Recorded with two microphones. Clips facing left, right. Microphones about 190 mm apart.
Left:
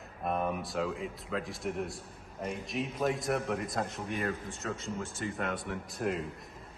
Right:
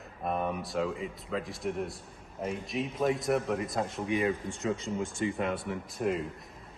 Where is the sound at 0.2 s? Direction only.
Centre (ahead or behind).